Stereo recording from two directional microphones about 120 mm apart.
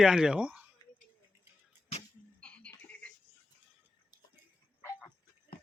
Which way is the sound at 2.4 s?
10° left (ahead or behind).